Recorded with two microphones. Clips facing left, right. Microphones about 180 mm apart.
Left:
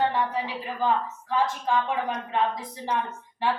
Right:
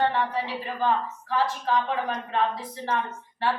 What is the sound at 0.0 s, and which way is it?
A woman's voice, 15° left (ahead or behind).